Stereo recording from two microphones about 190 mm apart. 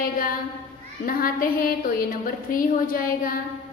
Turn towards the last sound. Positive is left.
turn(degrees=50)  # may be behind; listen again after turning